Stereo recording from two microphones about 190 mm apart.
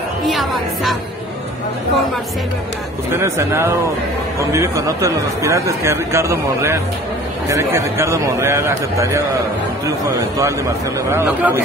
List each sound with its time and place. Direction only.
0.3 s a woman's voice: centre (ahead or behind)
3.1 s speech: 15° right (ahead or behind)